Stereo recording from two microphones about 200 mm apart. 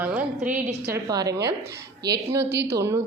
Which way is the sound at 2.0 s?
15° right (ahead or behind).